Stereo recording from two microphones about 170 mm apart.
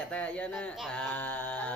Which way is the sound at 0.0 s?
5° left (ahead or behind).